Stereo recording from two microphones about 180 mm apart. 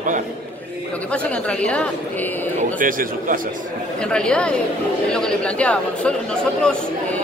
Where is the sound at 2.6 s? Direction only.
50° right (ahead or behind).